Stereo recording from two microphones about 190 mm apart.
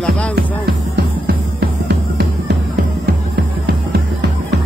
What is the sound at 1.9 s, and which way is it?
Music, 60° right (ahead or behind).